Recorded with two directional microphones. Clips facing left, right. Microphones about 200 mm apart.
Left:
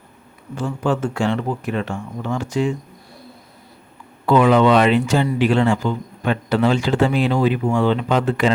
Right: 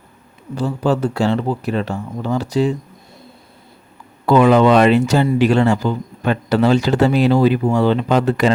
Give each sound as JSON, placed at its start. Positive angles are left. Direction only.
{"t": 0.5, "sound": "speech", "side_deg": -35}
{"t": 4.3, "sound": "speech", "side_deg": -40}